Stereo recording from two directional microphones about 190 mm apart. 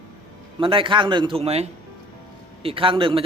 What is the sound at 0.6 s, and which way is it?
Speech, 25° right (ahead or behind).